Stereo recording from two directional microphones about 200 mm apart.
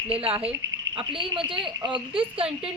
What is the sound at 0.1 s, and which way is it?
A woman's voice, 30° right (ahead or behind).